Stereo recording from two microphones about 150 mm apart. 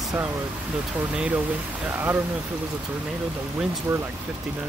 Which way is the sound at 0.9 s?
10° right (ahead or behind).